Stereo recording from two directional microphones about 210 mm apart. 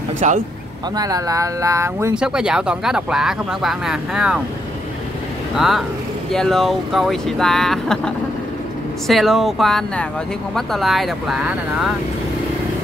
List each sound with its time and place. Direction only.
0.2 s speech: 35° right (ahead or behind)
0.9 s speech: 15° right (ahead or behind)
5.6 s speech: centre (ahead or behind)